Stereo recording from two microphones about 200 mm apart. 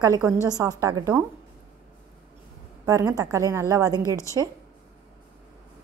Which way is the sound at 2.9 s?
15° right (ahead or behind).